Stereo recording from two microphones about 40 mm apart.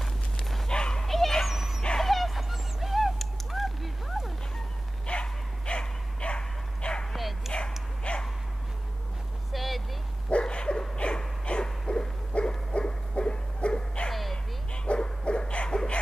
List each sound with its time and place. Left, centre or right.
0.0 s bow-wow: centre
0.7 s dog: left
1.0 s dog: centre
1.5 s dog: centre
2.0 s a sound: centre
5.0 s dog: left
7.2 s bow-wow: centre
8.1 s dog: left
9.5 s vehicle: centre
10.4 s dog: left
11.0 s a sound: left
14.9 s dog: left